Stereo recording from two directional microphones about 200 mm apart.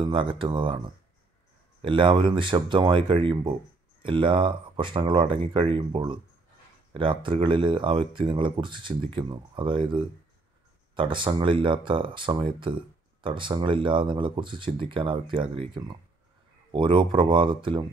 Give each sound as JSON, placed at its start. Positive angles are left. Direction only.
{"t": 0.0, "sound": "speech", "side_deg": -25}
{"t": 1.8, "sound": "speech", "side_deg": -25}